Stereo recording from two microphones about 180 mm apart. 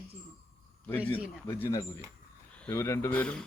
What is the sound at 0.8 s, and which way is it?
Speech, 10° left (ahead or behind).